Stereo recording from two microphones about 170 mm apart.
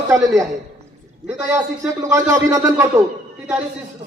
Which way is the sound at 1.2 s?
10° right (ahead or behind).